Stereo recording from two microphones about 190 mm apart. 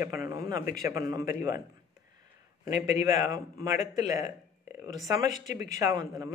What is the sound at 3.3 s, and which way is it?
Speech, 15° right (ahead or behind).